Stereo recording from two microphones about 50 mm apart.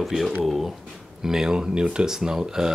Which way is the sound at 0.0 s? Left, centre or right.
Centre.